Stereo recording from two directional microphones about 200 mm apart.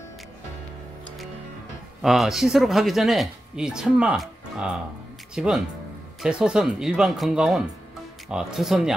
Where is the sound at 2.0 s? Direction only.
Centre (ahead or behind).